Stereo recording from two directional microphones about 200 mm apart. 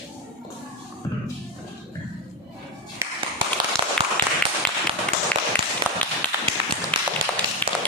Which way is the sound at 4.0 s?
5° left (ahead or behind).